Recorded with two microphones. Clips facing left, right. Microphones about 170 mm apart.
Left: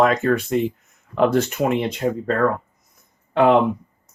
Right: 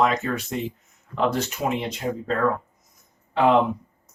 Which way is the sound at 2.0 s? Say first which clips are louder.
Left 5 dB; 70° left (ahead or behind).